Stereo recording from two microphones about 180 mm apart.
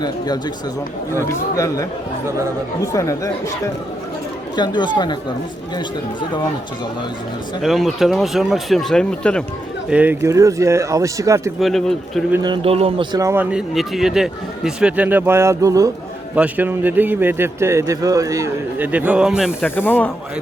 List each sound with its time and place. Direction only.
1.1 s speech: 15° left (ahead or behind)
4.5 s speech: 25° left (ahead or behind)
7.6 s speech: centre (ahead or behind)
9.9 s speech: 10° right (ahead or behind)
11.6 s speech: centre (ahead or behind)
12.4 s a man's voice: 30° right (ahead or behind)
13.1 s speech: 15° right (ahead or behind)
19.6 s speech: 10° left (ahead or behind)